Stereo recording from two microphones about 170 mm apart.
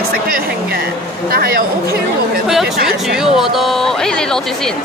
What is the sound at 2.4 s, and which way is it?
Speech, centre (ahead or behind).